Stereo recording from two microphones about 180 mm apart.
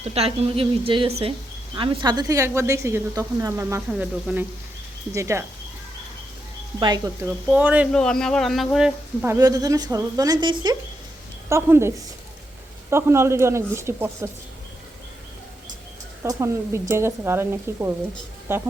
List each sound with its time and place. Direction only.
0.1 s a woman's voice: 35° right (ahead or behind); by 5.5 s 15° right (ahead or behind)
6.7 s speech: 20° right (ahead or behind)
7.4 s speech: 10° right (ahead or behind)
7.9 s speech: 5° left (ahead or behind)
9.2 s speech: 15° right (ahead or behind)
11.4 s speech: 15° right (ahead or behind)
16.2 s speech: 20° right (ahead or behind)